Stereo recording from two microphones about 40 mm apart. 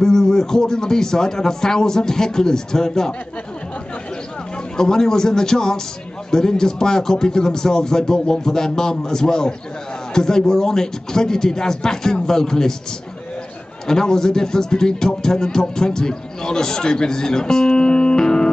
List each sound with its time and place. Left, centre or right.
0.0 s a man's voice: centre
4.7 s a man's voice: centre
13.8 s a man's voice: centre